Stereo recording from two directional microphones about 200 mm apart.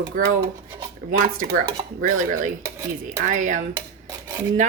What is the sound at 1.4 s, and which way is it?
A woman's voice, 40° right (ahead or behind).